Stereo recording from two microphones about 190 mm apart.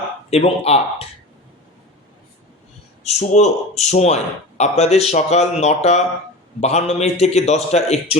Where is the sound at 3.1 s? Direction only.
35° left (ahead or behind).